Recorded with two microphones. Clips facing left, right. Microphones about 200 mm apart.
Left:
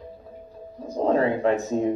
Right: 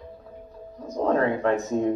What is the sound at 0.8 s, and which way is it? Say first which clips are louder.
A man's voice: left 1 dB; 20° left (ahead or behind).